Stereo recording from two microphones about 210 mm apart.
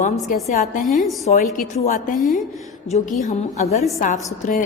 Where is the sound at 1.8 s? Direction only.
40° left (ahead or behind).